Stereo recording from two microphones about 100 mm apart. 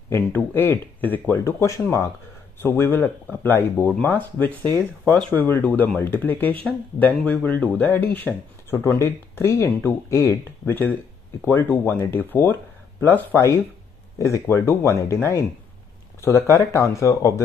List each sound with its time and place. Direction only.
0.1 s speech: 20° left (ahead or behind)
8.7 s speech: 30° left (ahead or behind)
10.7 s speech: 20° left (ahead or behind)